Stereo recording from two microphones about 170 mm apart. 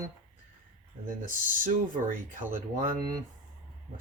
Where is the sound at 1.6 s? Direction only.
55° right (ahead or behind).